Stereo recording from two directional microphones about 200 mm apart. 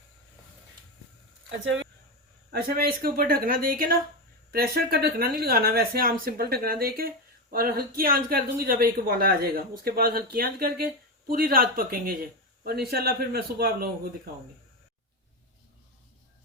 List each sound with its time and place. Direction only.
1.5 s speech: 70° right (ahead or behind)
2.5 s speech: 50° right (ahead or behind)